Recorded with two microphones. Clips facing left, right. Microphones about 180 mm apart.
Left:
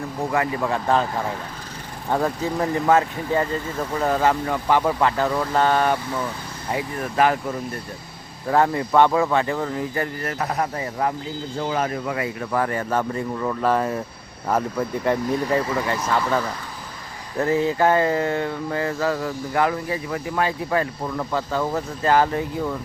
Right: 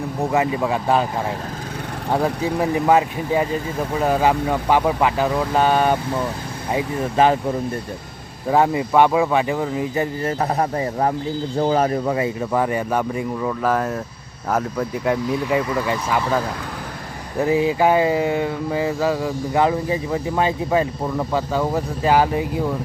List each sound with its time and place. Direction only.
0.3 s mantra: 20° right (ahead or behind)
2.0 s mantra: 10° right (ahead or behind)
6.7 s speech: 25° right (ahead or behind)
8.4 s mantra: 15° right (ahead or behind)
10.4 s a man's voice: 30° right (ahead or behind)
11.6 s mantra: 35° right (ahead or behind); by 13.5 s 10° right (ahead or behind)
13.5 s speech: centre (ahead or behind)
14.5 s mantra: 5° right (ahead or behind)
17.4 s mantra: 15° right (ahead or behind)